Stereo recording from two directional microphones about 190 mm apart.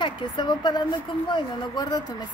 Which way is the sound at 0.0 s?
25° left (ahead or behind).